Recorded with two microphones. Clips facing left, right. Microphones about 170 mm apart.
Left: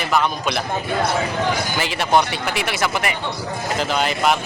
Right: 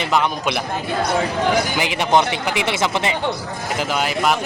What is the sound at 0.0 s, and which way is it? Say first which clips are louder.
Speech: right 1 dB; 20° right (ahead or behind).